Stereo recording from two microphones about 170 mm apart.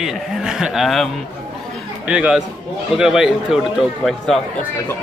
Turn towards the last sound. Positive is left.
turn(degrees=0)  # may be behind; listen again after turning